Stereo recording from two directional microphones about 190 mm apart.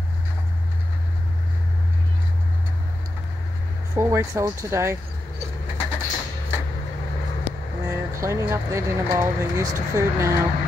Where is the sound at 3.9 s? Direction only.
15° right (ahead or behind).